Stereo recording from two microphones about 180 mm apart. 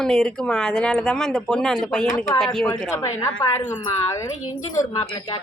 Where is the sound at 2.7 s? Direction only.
20° left (ahead or behind).